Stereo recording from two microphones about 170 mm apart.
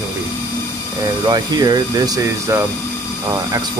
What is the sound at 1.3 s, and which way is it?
Speech, 25° right (ahead or behind).